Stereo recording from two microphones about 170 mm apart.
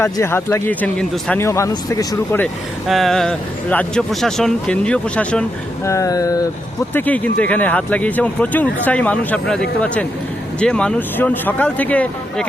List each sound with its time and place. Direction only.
0.0 s speech: 15° left (ahead or behind)
2.8 s speech: centre (ahead or behind)
5.9 s speech: 20° left (ahead or behind)
6.9 s speech: 10° left (ahead or behind)